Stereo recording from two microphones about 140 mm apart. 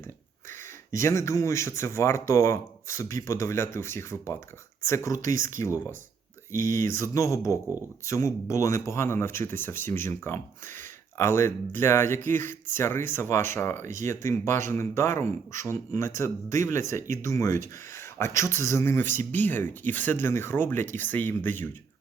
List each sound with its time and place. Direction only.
0.9 s speech: 20° left (ahead or behind)